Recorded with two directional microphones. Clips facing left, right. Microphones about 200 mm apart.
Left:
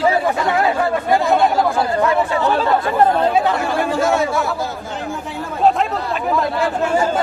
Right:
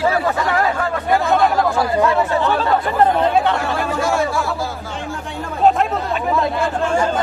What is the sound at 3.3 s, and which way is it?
Chatter, 5° left (ahead or behind).